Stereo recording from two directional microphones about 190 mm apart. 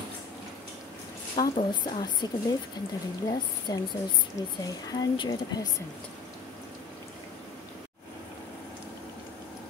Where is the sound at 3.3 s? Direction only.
20° left (ahead or behind).